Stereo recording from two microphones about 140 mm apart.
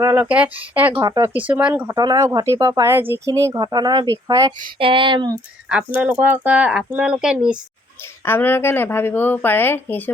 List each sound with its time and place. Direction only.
0.0 s speech: 25° right (ahead or behind)
0.3 s speech: 10° right (ahead or behind)
0.9 s speech: 25° right (ahead or behind)
1.3 s speech: 10° right (ahead or behind)
2.0 s speech: 25° right (ahead or behind)
4.8 s speech: 40° right (ahead or behind)
5.6 s speech: 10° right (ahead or behind)
8.2 s speech: 15° left (ahead or behind)